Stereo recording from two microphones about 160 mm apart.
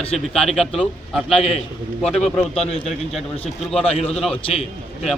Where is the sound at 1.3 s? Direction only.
40° left (ahead or behind).